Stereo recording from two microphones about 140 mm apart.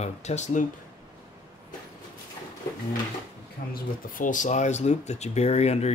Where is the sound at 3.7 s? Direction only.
75° left (ahead or behind).